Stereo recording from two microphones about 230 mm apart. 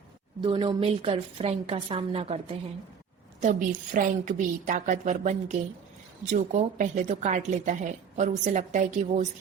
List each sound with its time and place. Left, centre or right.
0.4 s a woman's voice: right
3.4 s a woman's voice: right